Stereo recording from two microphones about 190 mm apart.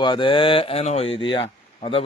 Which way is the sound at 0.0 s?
25° left (ahead or behind).